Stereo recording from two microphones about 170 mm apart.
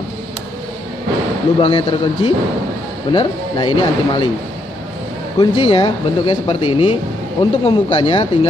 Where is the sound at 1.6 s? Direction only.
30° left (ahead or behind).